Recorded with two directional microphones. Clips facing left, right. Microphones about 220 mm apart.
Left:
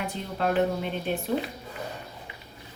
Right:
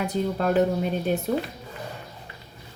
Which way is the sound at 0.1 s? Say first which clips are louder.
Right 4 dB; 40° right (ahead or behind).